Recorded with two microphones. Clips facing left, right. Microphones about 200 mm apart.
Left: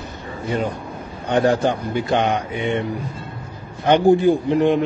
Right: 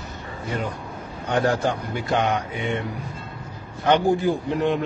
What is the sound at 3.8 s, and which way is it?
Speech, 15° left (ahead or behind).